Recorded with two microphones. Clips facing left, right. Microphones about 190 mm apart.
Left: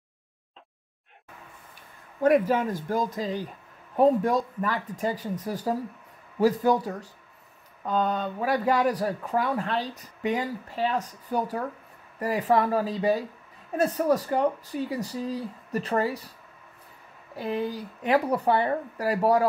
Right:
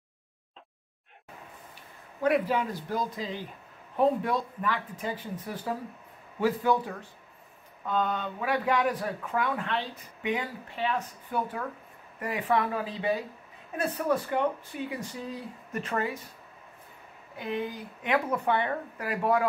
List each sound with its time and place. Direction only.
2.2 s speech: 45° left (ahead or behind)
17.4 s speech: 35° left (ahead or behind)